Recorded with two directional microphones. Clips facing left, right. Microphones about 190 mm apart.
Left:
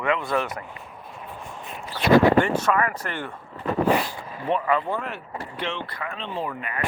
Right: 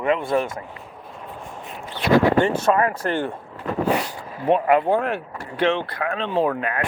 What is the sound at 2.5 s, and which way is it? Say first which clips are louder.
Speech: right 4 dB; 30° right (ahead or behind).